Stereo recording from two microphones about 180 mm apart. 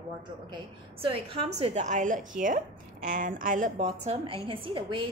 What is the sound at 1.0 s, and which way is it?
Speech, 30° right (ahead or behind).